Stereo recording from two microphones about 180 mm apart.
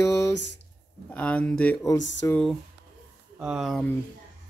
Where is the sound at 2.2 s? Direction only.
5° left (ahead or behind).